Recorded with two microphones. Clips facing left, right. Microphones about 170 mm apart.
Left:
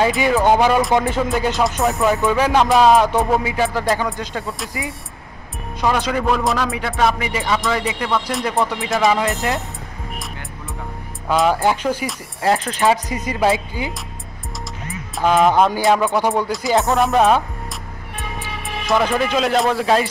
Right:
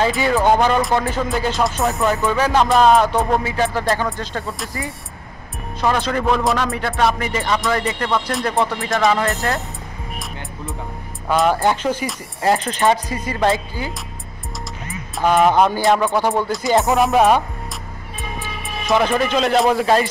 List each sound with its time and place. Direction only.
0.0 s speech: 15° left (ahead or behind)
0.5 s music: 5° left (ahead or behind)
0.9 s speech: 20° left (ahead or behind)
1.6 s music: centre (ahead or behind)
3.4 s speech: 10° left (ahead or behind)
4.4 s music: centre (ahead or behind)
5.8 s speech: 15° left (ahead or behind)
6.2 s music: centre (ahead or behind)
9.2 s speech: 15° left (ahead or behind)
11.2 s speech: centre (ahead or behind)
12.1 s music: centre (ahead or behind)
13.1 s speech: 20° left (ahead or behind)
15.1 s music: centre (ahead or behind)
18.9 s music: centre (ahead or behind)